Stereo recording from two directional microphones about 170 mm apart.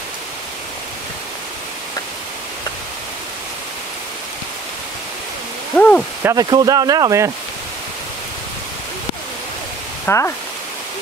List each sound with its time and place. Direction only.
5.8 s a sound: 5° left (ahead or behind)
6.2 s speech: 25° right (ahead or behind)
10.0 s speech: 15° left (ahead or behind)